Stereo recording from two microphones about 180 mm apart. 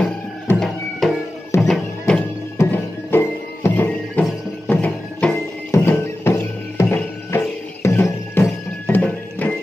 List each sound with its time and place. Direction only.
0.0 s music: 5° left (ahead or behind)
2.5 s music: 15° left (ahead or behind)